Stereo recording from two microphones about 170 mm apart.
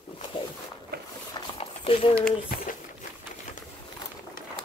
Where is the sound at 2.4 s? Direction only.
60° left (ahead or behind).